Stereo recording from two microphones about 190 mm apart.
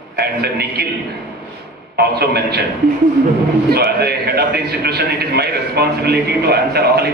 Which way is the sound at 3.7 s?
55° right (ahead or behind).